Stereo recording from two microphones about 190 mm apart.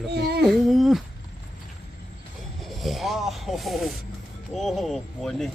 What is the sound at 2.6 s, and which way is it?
Speech, centre (ahead or behind).